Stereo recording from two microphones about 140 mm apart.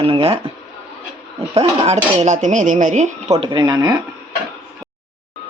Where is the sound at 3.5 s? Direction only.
30° right (ahead or behind).